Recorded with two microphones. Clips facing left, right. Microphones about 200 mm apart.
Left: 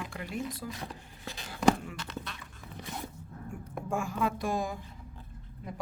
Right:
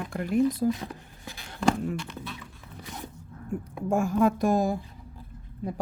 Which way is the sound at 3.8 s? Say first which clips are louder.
Right 9 dB; 40° right (ahead or behind).